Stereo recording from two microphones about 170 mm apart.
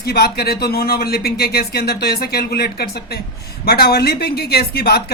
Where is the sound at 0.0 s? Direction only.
70° left (ahead or behind).